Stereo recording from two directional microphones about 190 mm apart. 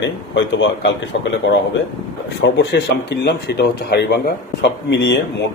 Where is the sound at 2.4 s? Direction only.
70° left (ahead or behind).